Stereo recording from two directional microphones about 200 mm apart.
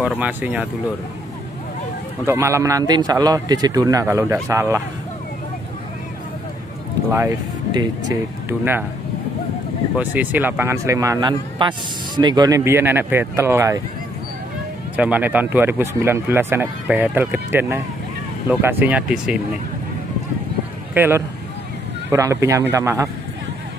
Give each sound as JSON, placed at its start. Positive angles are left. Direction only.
{"t": 0.0, "sound": "a man's voice", "side_deg": -5}
{"t": 2.2, "sound": "a man's voice", "side_deg": -15}
{"t": 7.1, "sound": "a man's voice", "side_deg": -15}
{"t": 9.9, "sound": "a man's voice", "side_deg": -10}
{"t": 15.0, "sound": "a man's voice", "side_deg": -5}
{"t": 20.9, "sound": "a man's voice", "side_deg": -10}